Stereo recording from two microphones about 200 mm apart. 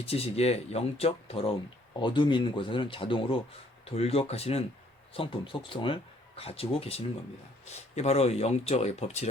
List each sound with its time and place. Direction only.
0.0 s speech: 30° left (ahead or behind)